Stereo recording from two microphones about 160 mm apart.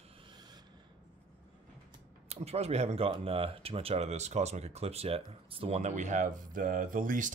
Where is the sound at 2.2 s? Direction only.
40° right (ahead or behind).